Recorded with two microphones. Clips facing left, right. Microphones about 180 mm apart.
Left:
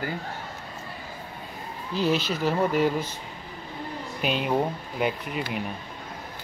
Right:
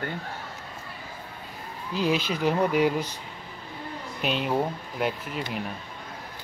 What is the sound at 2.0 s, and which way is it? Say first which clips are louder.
Speech: left 1 dB; 40° left (ahead or behind).